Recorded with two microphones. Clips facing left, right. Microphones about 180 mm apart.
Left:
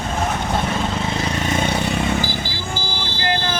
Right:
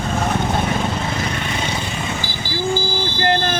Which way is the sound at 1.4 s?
50° left (ahead or behind).